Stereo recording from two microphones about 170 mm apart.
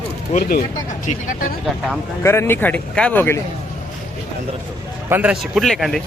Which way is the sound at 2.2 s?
15° left (ahead or behind).